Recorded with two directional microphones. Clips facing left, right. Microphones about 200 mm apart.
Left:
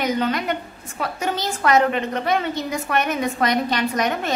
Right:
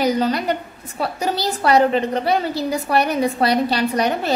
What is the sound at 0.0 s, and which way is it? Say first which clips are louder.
A woman's voice: right 3 dB; 35° right (ahead or behind).